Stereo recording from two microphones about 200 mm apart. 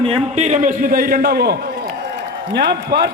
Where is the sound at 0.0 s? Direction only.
30° right (ahead or behind).